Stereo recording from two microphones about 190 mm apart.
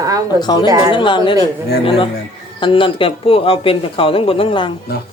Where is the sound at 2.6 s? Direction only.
25° left (ahead or behind).